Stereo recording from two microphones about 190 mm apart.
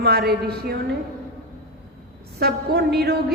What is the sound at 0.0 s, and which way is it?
Speech, 55° right (ahead or behind).